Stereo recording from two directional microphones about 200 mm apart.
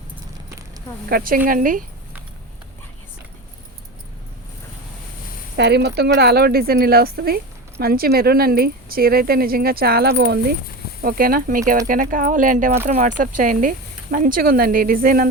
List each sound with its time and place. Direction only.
1.1 s speech: 45° right (ahead or behind)
5.5 s speech: 55° right (ahead or behind)